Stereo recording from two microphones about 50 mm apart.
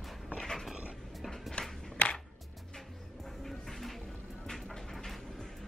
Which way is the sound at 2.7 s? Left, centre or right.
Centre.